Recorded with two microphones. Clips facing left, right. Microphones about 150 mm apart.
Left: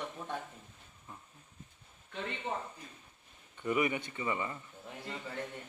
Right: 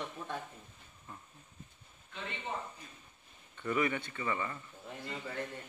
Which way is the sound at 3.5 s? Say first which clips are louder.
Left 1 dB; 15° left (ahead or behind).